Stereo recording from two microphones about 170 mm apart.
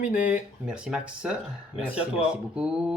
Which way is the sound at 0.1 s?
55° left (ahead or behind).